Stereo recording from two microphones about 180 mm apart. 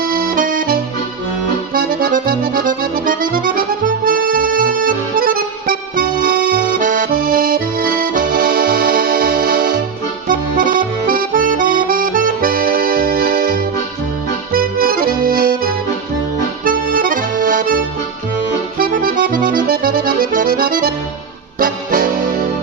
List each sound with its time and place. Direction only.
0.0 s accordion: 55° right (ahead or behind)
21.6 s music: 50° right (ahead or behind)